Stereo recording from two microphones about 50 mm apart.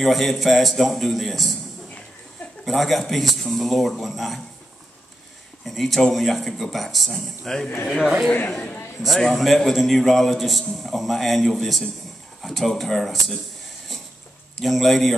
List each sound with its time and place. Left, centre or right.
0.0 s speech: centre
2.6 s speech: centre
5.7 s speech: centre
8.0 s a man's voice: centre
8.5 s a man's voice: left
9.3 s speech: centre
14.6 s speech: centre